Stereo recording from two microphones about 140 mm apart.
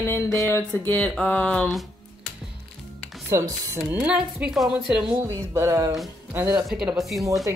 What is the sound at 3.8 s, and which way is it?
Speech, 10° right (ahead or behind).